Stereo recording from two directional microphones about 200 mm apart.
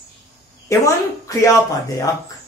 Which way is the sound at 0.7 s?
15° left (ahead or behind).